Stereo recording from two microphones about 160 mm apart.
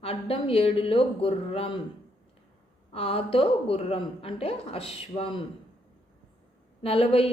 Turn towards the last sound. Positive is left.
turn(degrees=35)  # may be behind; listen again after turning